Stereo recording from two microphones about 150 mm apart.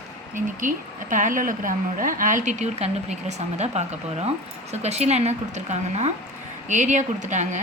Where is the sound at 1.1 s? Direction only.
60° right (ahead or behind).